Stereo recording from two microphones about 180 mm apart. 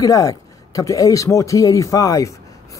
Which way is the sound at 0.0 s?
20° left (ahead or behind).